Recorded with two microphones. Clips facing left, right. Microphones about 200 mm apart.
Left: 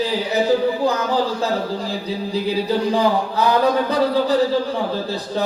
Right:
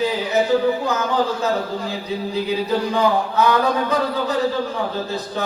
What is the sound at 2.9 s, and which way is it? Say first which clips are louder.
A man's voice: left 1 dB; 35° left (ahead or behind).